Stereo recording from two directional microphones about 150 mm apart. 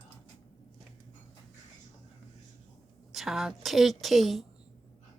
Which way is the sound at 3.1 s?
Centre (ahead or behind).